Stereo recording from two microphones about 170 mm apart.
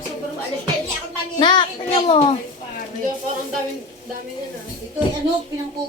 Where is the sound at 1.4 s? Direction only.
25° left (ahead or behind).